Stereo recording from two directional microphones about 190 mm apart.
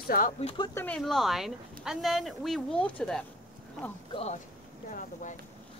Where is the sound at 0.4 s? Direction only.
35° left (ahead or behind).